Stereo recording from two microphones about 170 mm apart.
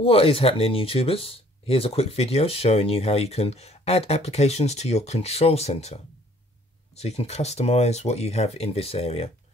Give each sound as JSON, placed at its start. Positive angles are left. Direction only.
{"t": 0.0, "sound": "speech", "side_deg": 35}